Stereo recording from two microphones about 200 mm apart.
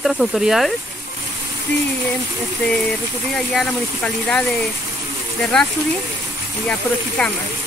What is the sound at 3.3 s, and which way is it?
Speech, centre (ahead or behind).